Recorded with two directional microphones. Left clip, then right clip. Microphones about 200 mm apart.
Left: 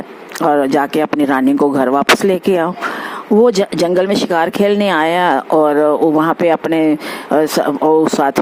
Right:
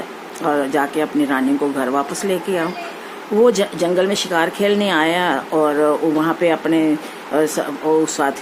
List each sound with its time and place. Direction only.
0.4 s speech: 45° left (ahead or behind)